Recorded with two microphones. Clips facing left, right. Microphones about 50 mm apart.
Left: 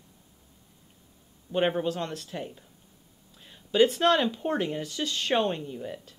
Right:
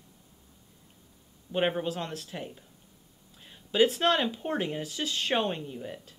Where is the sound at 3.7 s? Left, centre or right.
Centre.